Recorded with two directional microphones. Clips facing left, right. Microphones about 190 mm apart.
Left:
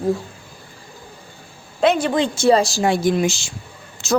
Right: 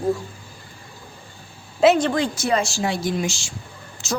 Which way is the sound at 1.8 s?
Centre (ahead or behind).